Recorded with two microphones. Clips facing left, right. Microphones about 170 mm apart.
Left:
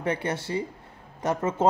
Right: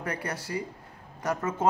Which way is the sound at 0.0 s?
25° left (ahead or behind).